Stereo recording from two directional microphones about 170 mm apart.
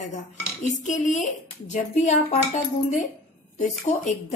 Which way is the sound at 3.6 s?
45° left (ahead or behind).